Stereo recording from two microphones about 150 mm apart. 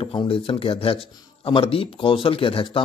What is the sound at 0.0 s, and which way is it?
A man's voice, 35° left (ahead or behind).